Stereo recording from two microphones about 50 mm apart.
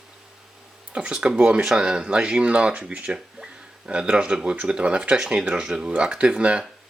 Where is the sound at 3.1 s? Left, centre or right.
Centre.